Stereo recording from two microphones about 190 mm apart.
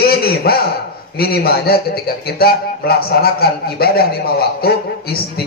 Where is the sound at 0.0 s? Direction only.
55° left (ahead or behind).